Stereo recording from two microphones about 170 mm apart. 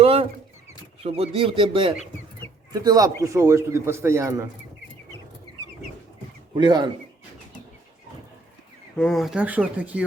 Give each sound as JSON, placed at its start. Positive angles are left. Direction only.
{"t": 0.0, "sound": "rodents", "side_deg": -35}
{"t": 1.0, "sound": "a man's voice", "side_deg": -35}
{"t": 6.5, "sound": "a man's voice", "side_deg": -25}
{"t": 9.0, "sound": "a man's voice", "side_deg": 0}